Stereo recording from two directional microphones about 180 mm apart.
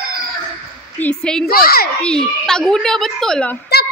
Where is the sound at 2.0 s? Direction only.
5° left (ahead or behind).